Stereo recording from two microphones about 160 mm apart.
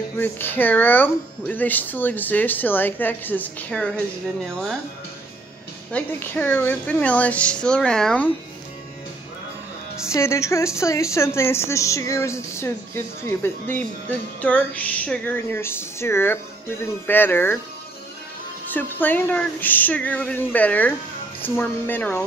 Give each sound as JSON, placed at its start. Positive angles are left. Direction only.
{"t": 0.2, "sound": "speech", "side_deg": 15}
{"t": 5.9, "sound": "speech", "side_deg": 10}
{"t": 10.0, "sound": "speech", "side_deg": 15}
{"t": 18.7, "sound": "speech", "side_deg": 10}